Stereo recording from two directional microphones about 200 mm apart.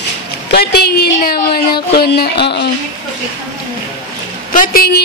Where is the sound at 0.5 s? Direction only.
55° left (ahead or behind).